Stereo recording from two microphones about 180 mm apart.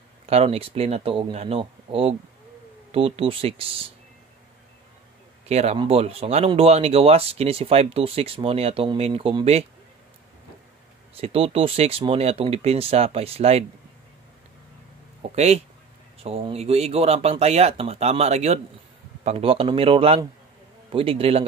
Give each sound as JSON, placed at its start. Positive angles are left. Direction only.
{"t": 0.3, "sound": "speech", "side_deg": -35}
{"t": 5.5, "sound": "speech", "side_deg": -35}
{"t": 11.1, "sound": "speech", "side_deg": -35}
{"t": 15.3, "sound": "speech", "side_deg": -35}